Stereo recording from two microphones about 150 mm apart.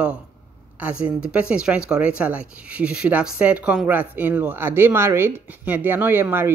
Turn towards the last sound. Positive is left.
turn(degrees=-15)  # may be behind; listen again after turning